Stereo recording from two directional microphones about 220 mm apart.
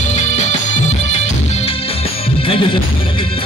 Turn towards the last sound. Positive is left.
turn(degrees=25)  # may be behind; listen again after turning